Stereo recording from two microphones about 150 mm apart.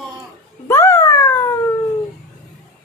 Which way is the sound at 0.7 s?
15° left (ahead or behind).